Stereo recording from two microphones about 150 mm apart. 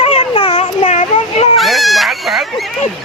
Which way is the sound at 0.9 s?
55° left (ahead or behind).